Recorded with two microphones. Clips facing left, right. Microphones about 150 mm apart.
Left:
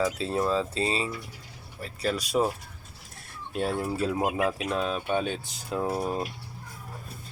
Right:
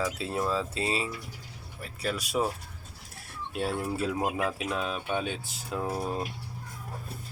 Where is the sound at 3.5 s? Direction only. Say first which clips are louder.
Left 2 dB; centre (ahead or behind).